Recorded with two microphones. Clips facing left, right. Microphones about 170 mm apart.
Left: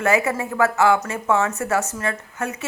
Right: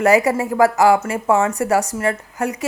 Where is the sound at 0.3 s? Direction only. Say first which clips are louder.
Right 5 dB; 35° right (ahead or behind).